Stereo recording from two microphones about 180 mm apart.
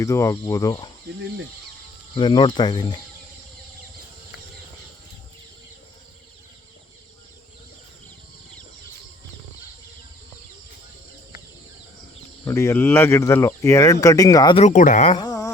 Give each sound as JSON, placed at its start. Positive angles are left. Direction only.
{"t": 0.0, "sound": "speech", "side_deg": 15}
{"t": 2.1, "sound": "speech", "side_deg": 25}
{"t": 12.5, "sound": "speech", "side_deg": 15}
{"t": 14.6, "sound": "speech", "side_deg": 45}
{"t": 15.1, "sound": "a sound", "side_deg": 20}